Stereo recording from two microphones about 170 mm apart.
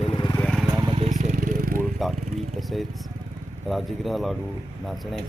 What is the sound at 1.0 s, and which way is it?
Vehicle, 45° right (ahead or behind).